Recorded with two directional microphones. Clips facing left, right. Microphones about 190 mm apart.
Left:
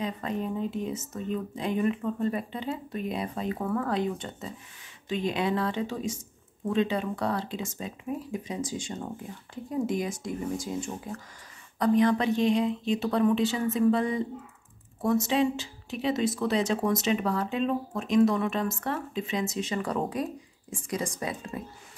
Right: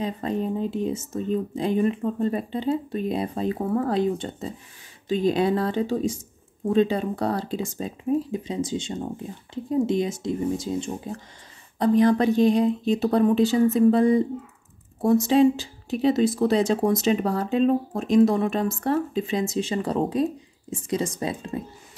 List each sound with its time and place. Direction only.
0.0 s speech: 35° right (ahead or behind)
11.8 s speech: 35° right (ahead or behind)